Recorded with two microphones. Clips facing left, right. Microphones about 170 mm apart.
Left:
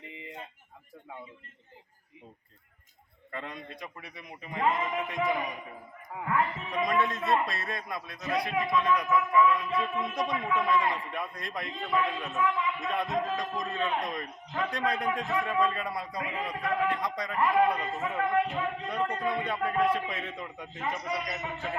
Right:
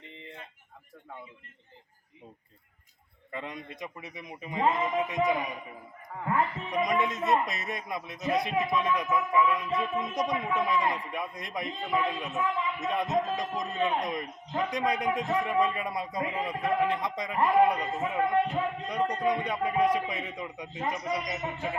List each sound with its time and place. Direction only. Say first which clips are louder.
0.0 s a sound: left 2 dB; 5° left (ahead or behind)
3.3 s a man's voice: right 1 dB; 20° right (ahead or behind)
6.7 s a man's voice: right 1 dB; 20° right (ahead or behind)